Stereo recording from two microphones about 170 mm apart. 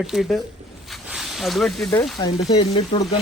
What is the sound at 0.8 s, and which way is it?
Snake, centre (ahead or behind).